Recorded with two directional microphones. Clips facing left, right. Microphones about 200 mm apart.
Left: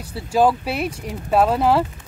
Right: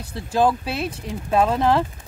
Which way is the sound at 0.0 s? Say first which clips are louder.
Left 2 dB; 10° left (ahead or behind).